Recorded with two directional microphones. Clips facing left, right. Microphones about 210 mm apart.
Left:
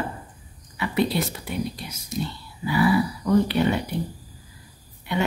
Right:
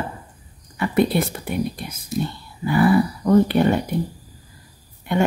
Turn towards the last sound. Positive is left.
turn(degrees=-50)  # may be behind; listen again after turning